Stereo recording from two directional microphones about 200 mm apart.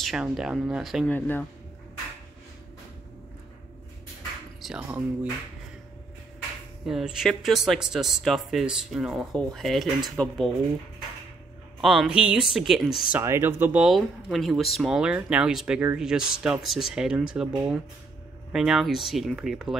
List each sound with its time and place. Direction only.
0.0 s speech: 5° right (ahead or behind)
4.6 s speech: 5° right (ahead or behind)
6.9 s speech: centre (ahead or behind)
11.8 s speech: centre (ahead or behind)
13.1 s speech: 10° right (ahead or behind)